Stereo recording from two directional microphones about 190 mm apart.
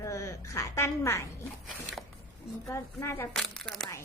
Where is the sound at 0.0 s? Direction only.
15° left (ahead or behind).